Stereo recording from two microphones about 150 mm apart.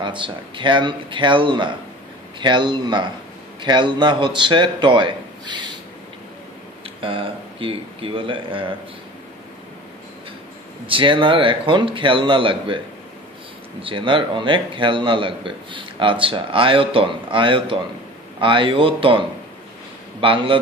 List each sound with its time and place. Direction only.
0.0 s a man's voice: 35° right (ahead or behind)
7.0 s a man's voice: 35° right (ahead or behind)
10.9 s a man's voice: 35° right (ahead or behind)
13.8 s a man's voice: 35° right (ahead or behind)